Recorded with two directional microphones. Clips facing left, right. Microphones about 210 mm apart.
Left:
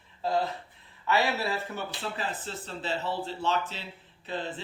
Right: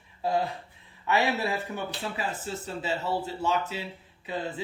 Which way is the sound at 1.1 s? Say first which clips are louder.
Right 1 dB; 15° right (ahead or behind).